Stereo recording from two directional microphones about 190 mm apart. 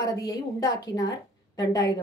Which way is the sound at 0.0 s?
20° left (ahead or behind).